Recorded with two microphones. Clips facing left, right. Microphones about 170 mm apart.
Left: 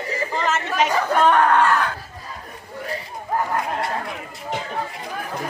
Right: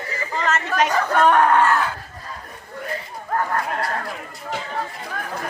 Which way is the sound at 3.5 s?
20° left (ahead or behind).